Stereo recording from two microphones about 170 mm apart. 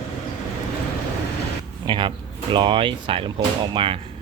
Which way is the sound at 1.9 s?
30° right (ahead or behind).